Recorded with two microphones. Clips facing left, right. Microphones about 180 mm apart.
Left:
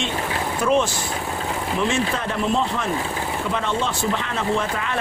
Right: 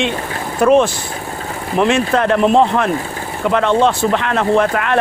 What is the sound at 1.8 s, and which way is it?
Speech, 70° right (ahead or behind).